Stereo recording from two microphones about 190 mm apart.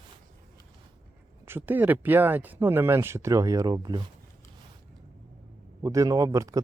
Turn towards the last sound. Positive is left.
turn(degrees=-15)  # may be behind; listen again after turning